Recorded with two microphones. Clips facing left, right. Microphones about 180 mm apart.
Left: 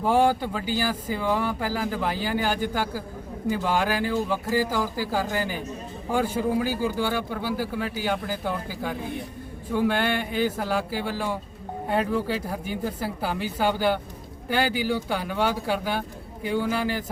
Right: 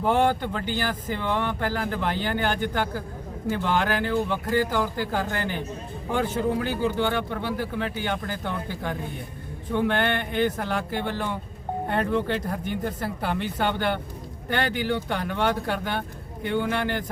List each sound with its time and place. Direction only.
0.0 s speech: 10° left (ahead or behind)